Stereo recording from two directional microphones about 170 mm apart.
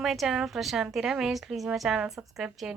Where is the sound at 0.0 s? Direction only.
Centre (ahead or behind).